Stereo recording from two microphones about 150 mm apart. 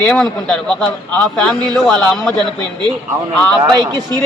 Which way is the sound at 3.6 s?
30° right (ahead or behind).